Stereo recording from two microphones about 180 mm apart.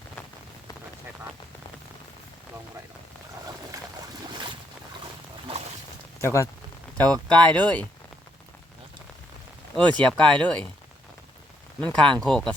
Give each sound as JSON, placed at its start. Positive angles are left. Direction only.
{"t": 6.2, "sound": "speech", "side_deg": 15}
{"t": 9.7, "sound": "speech", "side_deg": 5}
{"t": 11.8, "sound": "speech", "side_deg": 5}